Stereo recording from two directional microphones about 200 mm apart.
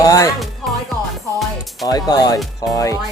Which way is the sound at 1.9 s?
20° left (ahead or behind).